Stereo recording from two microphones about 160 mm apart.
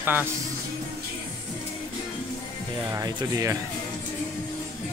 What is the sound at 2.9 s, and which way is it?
Speech, 20° right (ahead or behind).